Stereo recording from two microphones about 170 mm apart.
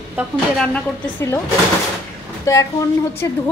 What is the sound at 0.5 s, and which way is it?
Speech, 5° left (ahead or behind).